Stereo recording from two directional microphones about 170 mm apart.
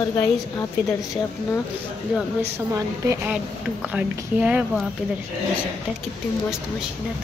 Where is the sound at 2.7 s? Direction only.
15° right (ahead or behind).